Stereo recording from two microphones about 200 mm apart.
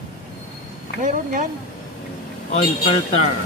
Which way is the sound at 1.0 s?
40° right (ahead or behind).